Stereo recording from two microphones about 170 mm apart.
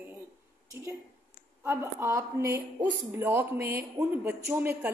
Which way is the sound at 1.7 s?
15° right (ahead or behind).